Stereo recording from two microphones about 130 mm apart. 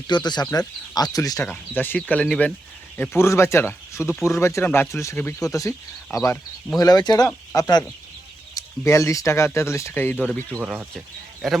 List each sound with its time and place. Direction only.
0.1 s speech: 35° left (ahead or behind)
1.5 s speech: 15° left (ahead or behind)
3.0 s speech: 20° left (ahead or behind)
10.6 s speech: 10° right (ahead or behind)